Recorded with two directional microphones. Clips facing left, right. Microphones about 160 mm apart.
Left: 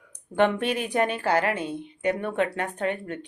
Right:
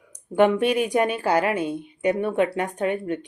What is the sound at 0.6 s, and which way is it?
A woman's voice, 15° right (ahead or behind).